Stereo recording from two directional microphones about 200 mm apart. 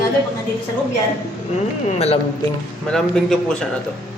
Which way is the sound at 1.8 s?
35° left (ahead or behind).